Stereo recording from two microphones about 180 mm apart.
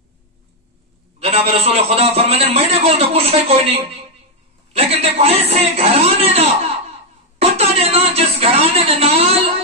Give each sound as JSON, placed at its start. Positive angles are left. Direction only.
{"t": 1.2, "sound": "a man's voice", "side_deg": -35}
{"t": 7.3, "sound": "music", "side_deg": -35}